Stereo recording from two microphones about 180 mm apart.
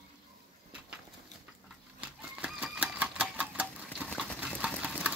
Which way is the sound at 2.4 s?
5° right (ahead or behind).